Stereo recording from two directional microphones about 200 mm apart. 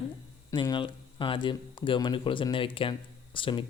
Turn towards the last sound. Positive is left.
turn(degrees=25)  # may be behind; listen again after turning